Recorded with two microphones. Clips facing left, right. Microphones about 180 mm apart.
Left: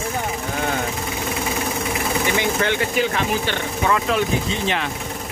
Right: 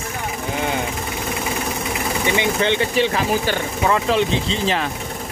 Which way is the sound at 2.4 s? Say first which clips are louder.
Right 2 dB; 20° right (ahead or behind).